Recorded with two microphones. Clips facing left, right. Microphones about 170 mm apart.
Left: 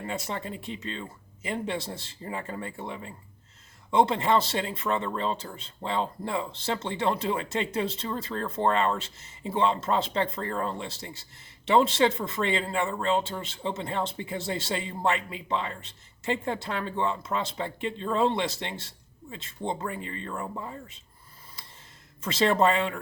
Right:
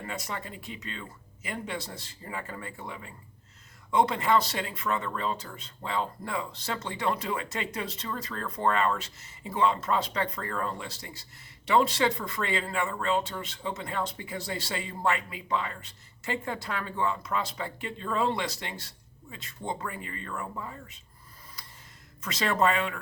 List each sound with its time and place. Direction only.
0.1 s speech: 25° left (ahead or behind)
21.6 s a sound: 25° left (ahead or behind)
22.2 s speech: 30° left (ahead or behind)